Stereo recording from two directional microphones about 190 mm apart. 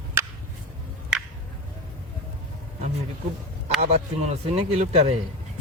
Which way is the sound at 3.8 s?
35° right (ahead or behind).